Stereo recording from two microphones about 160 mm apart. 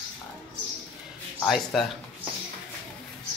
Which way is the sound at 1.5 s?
Centre (ahead or behind).